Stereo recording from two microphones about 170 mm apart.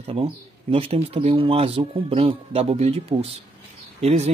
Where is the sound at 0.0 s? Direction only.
35° right (ahead or behind).